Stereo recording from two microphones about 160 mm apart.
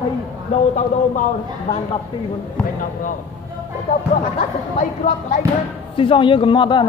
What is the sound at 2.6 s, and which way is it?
Speech, 5° left (ahead or behind).